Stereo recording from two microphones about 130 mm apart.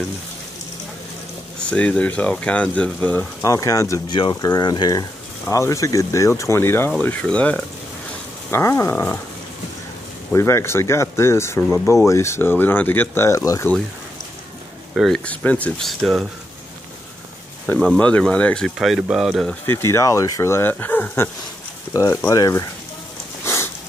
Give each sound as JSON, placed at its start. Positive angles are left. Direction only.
{"t": 1.7, "sound": "speech", "side_deg": 10}
{"t": 3.4, "sound": "speech", "side_deg": 25}
{"t": 8.5, "sound": "speech", "side_deg": 20}
{"t": 10.3, "sound": "speech", "side_deg": 20}
{"t": 15.0, "sound": "speech", "side_deg": 5}
{"t": 15.9, "sound": "speech", "side_deg": 0}
{"t": 17.7, "sound": "speech", "side_deg": 5}
{"t": 19.6, "sound": "speech", "side_deg": 20}
{"t": 23.4, "sound": "sniff", "side_deg": 20}